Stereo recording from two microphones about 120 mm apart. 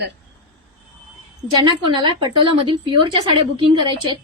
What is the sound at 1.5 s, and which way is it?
A woman's voice, 40° right (ahead or behind).